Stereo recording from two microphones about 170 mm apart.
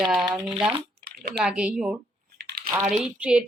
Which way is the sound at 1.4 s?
5° right (ahead or behind).